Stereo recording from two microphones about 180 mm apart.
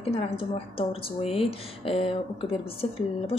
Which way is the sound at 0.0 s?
30° left (ahead or behind).